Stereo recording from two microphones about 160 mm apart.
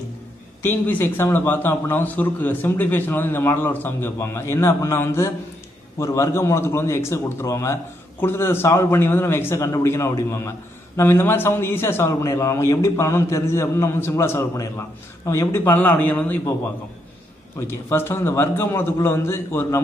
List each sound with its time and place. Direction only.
0.6 s speech: 10° left (ahead or behind)
17.6 s speech: 15° left (ahead or behind)